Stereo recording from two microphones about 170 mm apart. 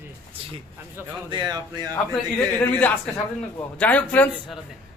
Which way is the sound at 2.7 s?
10° left (ahead or behind).